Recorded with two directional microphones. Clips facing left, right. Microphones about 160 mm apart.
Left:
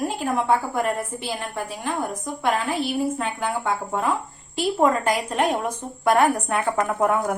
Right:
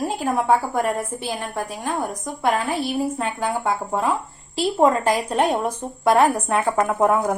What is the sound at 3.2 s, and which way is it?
A woman's voice, 35° right (ahead or behind).